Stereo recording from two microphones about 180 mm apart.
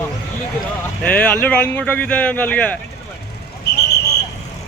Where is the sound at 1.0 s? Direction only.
5° left (ahead or behind).